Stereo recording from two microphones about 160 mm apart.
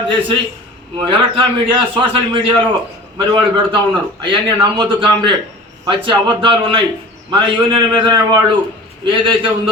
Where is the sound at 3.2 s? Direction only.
30° right (ahead or behind).